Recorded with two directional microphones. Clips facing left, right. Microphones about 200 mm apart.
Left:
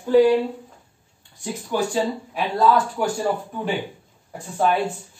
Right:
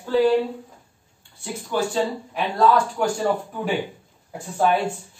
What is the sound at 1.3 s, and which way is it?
Speech, 15° left (ahead or behind).